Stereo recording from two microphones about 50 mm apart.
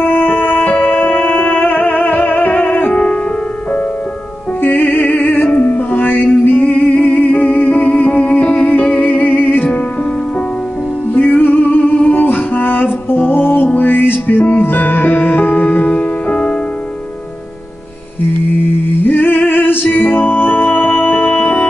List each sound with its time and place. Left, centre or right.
0.0 s music: left
4.6 s music: left
11.1 s music: left
19.0 s music: left